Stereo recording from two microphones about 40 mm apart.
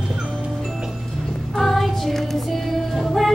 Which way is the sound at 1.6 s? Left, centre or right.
Centre.